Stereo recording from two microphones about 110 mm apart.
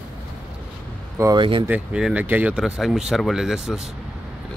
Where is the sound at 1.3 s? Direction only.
50° right (ahead or behind).